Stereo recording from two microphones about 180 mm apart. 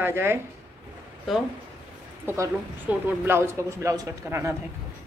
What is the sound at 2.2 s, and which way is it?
A woman's voice, 15° right (ahead or behind).